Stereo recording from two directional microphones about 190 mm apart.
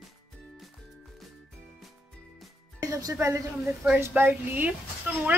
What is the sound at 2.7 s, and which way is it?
A woman's voice, 20° right (ahead or behind).